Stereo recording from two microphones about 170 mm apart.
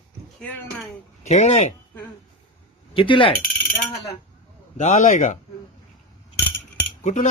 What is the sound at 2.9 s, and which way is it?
Speech, 30° left (ahead or behind).